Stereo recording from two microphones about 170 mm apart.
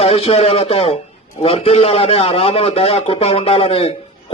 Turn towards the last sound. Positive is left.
turn(degrees=35)  # may be behind; listen again after turning